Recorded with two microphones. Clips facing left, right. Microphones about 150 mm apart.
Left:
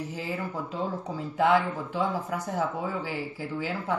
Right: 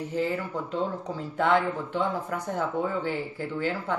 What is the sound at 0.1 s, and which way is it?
Speech, 5° left (ahead or behind).